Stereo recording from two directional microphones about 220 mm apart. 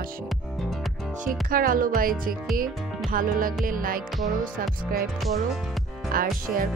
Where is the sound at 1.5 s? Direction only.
40° right (ahead or behind).